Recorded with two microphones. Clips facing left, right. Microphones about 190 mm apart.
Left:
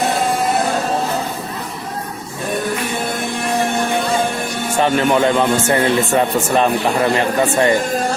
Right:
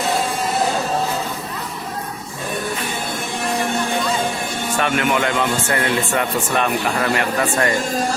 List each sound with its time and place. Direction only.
4.8 s speech: 30° left (ahead or behind)